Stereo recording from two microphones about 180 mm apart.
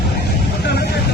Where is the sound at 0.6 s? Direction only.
60° left (ahead or behind).